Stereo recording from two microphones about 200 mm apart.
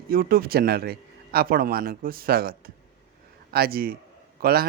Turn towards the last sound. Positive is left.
turn(degrees=-50)  # may be behind; listen again after turning